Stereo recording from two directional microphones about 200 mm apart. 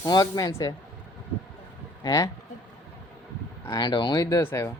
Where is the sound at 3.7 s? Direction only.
20° left (ahead or behind).